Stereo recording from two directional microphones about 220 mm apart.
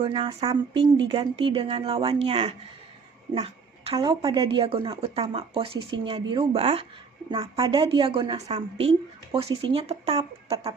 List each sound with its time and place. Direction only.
0.0 s a woman's voice: 20° right (ahead or behind)